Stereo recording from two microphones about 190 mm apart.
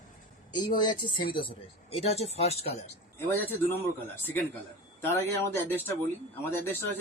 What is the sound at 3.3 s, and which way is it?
Speech, 10° left (ahead or behind).